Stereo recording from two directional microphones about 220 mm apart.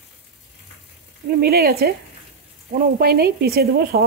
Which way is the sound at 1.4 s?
45° right (ahead or behind).